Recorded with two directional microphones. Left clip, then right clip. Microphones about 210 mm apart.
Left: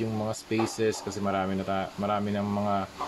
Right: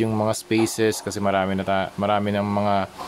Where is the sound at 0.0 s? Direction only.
35° right (ahead or behind).